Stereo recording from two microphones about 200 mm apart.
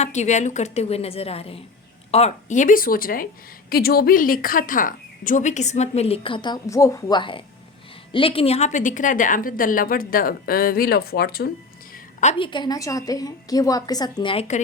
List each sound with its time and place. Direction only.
0.0 s a woman's voice: 35° left (ahead or behind); by 11.5 s 50° left (ahead or behind)
12.2 s a woman's voice: 30° left (ahead or behind)